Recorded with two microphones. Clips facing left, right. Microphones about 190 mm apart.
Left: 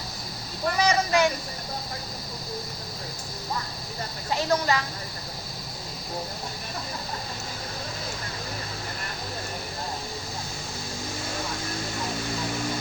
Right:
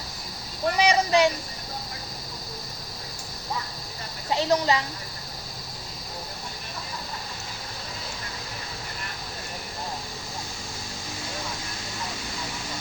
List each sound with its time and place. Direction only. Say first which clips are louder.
0.8 s speech: right 2 dB; 15° right (ahead or behind)
4.3 s speech: right 2 dB; 20° right (ahead or behind)